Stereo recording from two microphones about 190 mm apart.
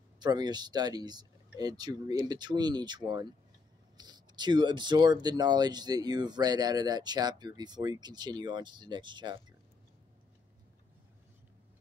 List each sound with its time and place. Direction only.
0.2 s speech: 20° right (ahead or behind)